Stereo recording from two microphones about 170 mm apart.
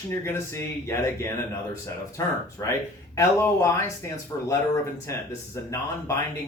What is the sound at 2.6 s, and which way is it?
Speech, 20° left (ahead or behind).